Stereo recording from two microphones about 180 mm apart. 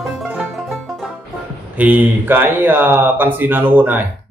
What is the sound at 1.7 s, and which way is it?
Speech, 10° right (ahead or behind).